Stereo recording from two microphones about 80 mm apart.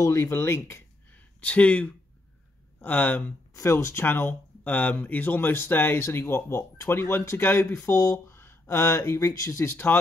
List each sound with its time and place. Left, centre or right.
0.0 s speech: left
1.1 s a sound: centre
2.8 s speech: left
3.5 s speech: left
9.7 s speech: left